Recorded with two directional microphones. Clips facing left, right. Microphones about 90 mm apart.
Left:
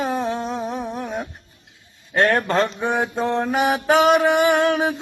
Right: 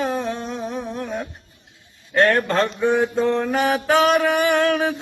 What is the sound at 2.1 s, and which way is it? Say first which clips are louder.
Mantra: right 1 dB; 20° left (ahead or behind).